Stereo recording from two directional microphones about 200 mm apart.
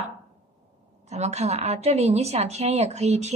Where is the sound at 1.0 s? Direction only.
35° right (ahead or behind).